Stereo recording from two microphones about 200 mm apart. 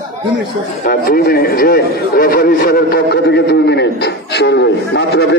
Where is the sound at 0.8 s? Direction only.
50° left (ahead or behind).